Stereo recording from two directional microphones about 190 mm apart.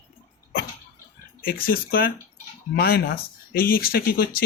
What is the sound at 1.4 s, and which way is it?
Speech, 50° left (ahead or behind).